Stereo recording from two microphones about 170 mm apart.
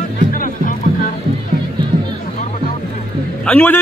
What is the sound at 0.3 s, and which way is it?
Music, 55° left (ahead or behind).